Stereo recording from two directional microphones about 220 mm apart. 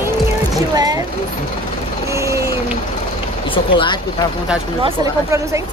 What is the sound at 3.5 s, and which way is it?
Speech, 20° left (ahead or behind).